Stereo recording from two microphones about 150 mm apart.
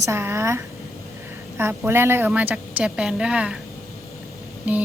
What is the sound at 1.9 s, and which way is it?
A woman's voice, 15° right (ahead or behind).